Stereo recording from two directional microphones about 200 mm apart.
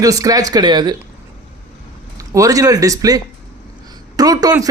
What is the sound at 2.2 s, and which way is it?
Speech, 15° right (ahead or behind).